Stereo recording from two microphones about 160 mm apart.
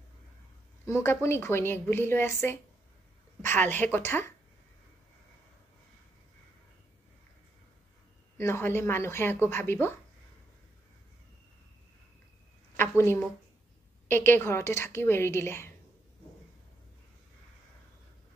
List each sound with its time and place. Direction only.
0.8 s a woman's voice: 20° left (ahead or behind)
8.4 s a woman's voice: 15° left (ahead or behind)
12.7 s a woman's voice: 15° left (ahead or behind)